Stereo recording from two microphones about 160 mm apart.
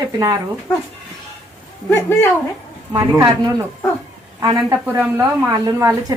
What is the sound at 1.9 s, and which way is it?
Speech, 15° left (ahead or behind).